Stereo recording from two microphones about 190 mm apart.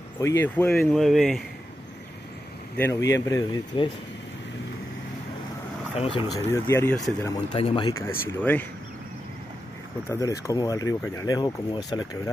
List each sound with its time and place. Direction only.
0.2 s speech: 15° left (ahead or behind)
3.1 s speech: 15° left (ahead or behind)
5.9 s speech: 30° left (ahead or behind)
6.5 s speech: 15° left (ahead or behind)
7.5 s speech: 30° left (ahead or behind)
8.0 s speech: 15° left (ahead or behind)
10.0 s speech: 15° left (ahead or behind)